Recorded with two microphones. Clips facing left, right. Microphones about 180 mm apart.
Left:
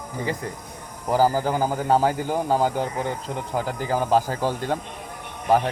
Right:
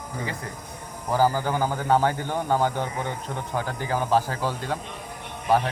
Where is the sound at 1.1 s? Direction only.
15° left (ahead or behind).